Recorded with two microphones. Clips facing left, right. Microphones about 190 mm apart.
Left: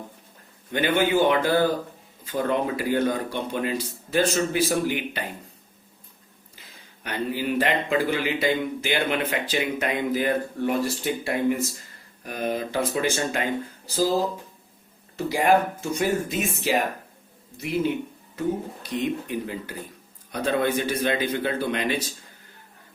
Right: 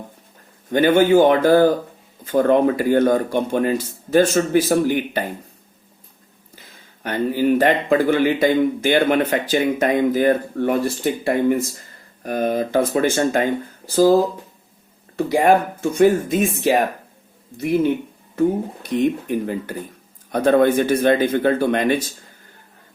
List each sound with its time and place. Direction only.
0.7 s a man's voice: 45° right (ahead or behind)
7.0 s a man's voice: 45° right (ahead or behind)